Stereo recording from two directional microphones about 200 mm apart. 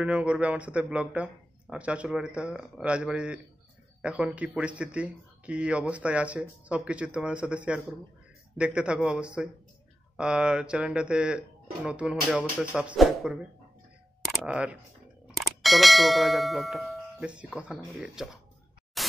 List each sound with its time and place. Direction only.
0.0 s speech: 5° right (ahead or behind)
19.0 s static: centre (ahead or behind)